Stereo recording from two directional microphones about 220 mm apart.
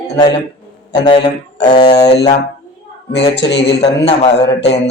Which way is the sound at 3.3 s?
50° left (ahead or behind).